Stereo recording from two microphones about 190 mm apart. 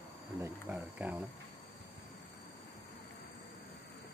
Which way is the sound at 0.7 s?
5° right (ahead or behind).